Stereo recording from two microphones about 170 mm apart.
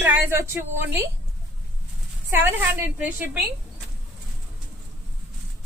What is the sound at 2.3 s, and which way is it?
A woman's voice, 10° right (ahead or behind).